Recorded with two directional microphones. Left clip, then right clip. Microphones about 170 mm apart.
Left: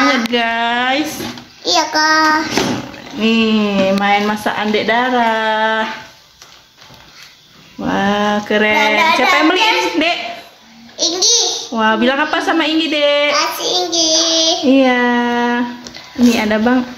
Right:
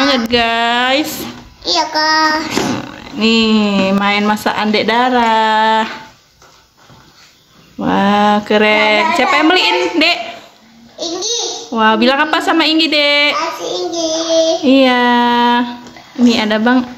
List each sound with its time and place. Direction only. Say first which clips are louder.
0.0 s speech: right 1 dB; 20° right (ahead or behind)
1.7 s child singing: even; 45° left (ahead or behind)
3.2 s speech: right 2 dB; 20° right (ahead or behind)
7.8 s speech: right 4 dB; 25° right (ahead or behind)
11.0 s a child's voice: left 5 dB; 5° right (ahead or behind)
11.7 s speech: right 4 dB; 20° right (ahead or behind)
13.6 s a child's voice: left 3 dB; centre (ahead or behind)
14.7 s a child's voice: right 2 dB; 15° right (ahead or behind)